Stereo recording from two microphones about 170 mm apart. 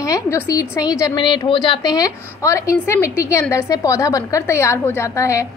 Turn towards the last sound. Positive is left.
turn(degrees=15)  # may be behind; listen again after turning